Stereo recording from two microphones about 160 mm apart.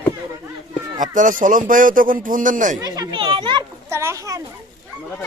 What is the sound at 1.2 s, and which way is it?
Speech, 55° right (ahead or behind).